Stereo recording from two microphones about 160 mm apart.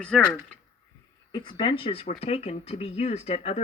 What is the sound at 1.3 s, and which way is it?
Speech, 30° left (ahead or behind).